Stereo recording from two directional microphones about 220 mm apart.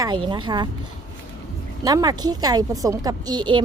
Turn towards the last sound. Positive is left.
turn(degrees=-20)  # may be behind; listen again after turning